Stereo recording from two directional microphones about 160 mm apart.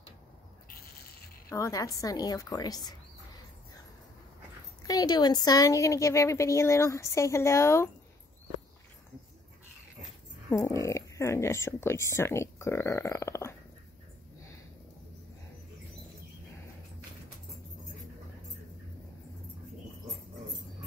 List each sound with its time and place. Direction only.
1.5 s speech: 20° left (ahead or behind)
4.8 s speech: 25° left (ahead or behind)
10.5 s speech: 20° left (ahead or behind)